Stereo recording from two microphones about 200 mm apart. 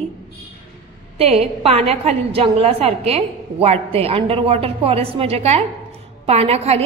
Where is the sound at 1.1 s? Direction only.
30° right (ahead or behind).